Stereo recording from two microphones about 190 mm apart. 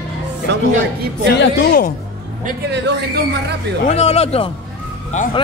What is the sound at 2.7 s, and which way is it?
Speech, 65° right (ahead or behind).